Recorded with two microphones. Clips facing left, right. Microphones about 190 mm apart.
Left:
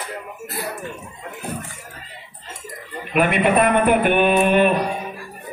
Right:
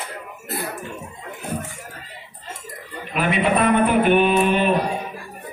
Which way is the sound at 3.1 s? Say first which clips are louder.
Left 3 dB; 55° left (ahead or behind).